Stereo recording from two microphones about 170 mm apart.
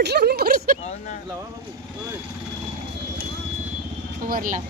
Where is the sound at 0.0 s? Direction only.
75° right (ahead or behind).